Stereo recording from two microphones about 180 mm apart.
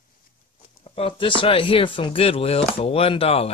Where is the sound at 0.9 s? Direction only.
30° left (ahead or behind).